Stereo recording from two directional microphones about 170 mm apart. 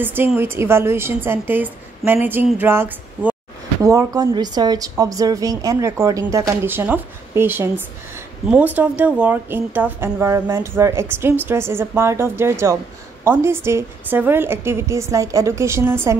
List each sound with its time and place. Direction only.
0.0 s a woman's voice: 10° right (ahead or behind)